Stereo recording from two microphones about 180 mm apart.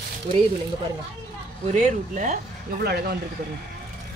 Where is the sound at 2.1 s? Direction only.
45° right (ahead or behind).